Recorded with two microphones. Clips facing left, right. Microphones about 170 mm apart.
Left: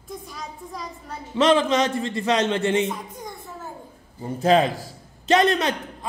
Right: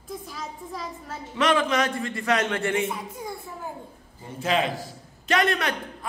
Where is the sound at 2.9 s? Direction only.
5° right (ahead or behind).